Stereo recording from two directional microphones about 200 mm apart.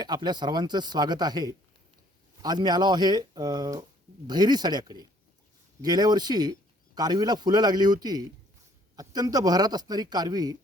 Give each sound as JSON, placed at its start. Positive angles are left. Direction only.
{"t": 0.0, "sound": "speech", "side_deg": -20}